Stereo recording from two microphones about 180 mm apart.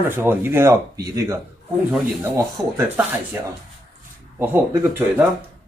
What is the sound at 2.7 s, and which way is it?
Speech, 10° right (ahead or behind).